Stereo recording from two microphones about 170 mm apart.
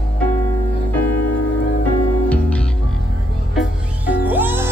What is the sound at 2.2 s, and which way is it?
Music, 5° left (ahead or behind).